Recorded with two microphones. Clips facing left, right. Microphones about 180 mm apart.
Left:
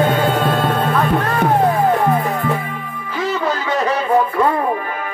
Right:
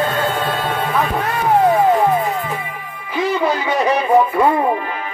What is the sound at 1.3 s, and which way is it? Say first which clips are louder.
Music: right 4 dB; 60° left (ahead or behind).